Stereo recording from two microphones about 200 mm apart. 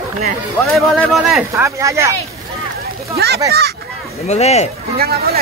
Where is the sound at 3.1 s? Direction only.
55° right (ahead or behind).